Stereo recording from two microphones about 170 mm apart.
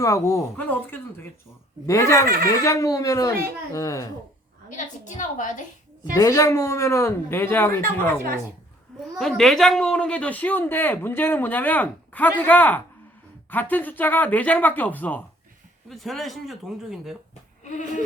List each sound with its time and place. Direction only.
0.0 s a child's voice: 20° left (ahead or behind)
5.0 s a woman's voice: 50° left (ahead or behind)
6.1 s speech: 20° left (ahead or behind)
9.1 s speech: centre (ahead or behind)
17.6 s a sound: 45° left (ahead or behind)